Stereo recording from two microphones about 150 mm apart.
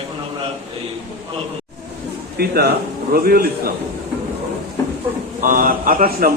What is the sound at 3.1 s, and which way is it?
Speech, 75° right (ahead or behind).